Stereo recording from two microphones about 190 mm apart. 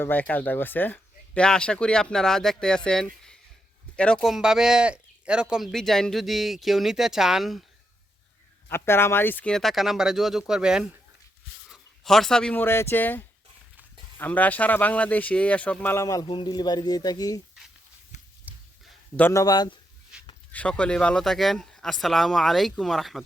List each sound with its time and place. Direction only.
0.0 s speech: 10° left (ahead or behind)
8.7 s speech: 10° left (ahead or behind)
18.5 s a sound: 10° right (ahead or behind)
19.1 s a man's voice: 15° left (ahead or behind)
20.1 s a sound: 5° right (ahead or behind)
20.5 s speech: 5° left (ahead or behind)